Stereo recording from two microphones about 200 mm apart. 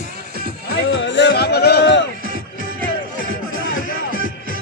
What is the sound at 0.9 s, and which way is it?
Music, 65° left (ahead or behind).